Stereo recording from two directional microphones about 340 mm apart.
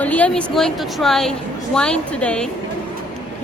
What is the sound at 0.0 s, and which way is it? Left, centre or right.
A woman's voice, centre.